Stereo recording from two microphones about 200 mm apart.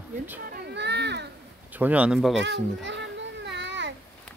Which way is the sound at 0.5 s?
60° right (ahead or behind).